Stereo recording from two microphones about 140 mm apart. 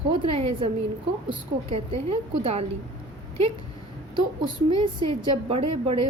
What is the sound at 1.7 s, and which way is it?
Speech, 45° right (ahead or behind).